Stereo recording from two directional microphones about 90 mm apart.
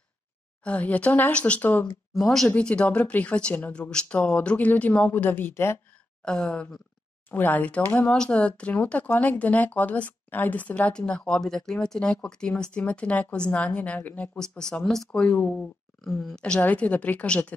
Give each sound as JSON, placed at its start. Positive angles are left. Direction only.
{"t": 0.7, "sound": "speech", "side_deg": 15}
{"t": 2.1, "sound": "speech", "side_deg": 5}
{"t": 6.2, "sound": "speech", "side_deg": 5}
{"t": 7.2, "sound": "speech", "side_deg": 20}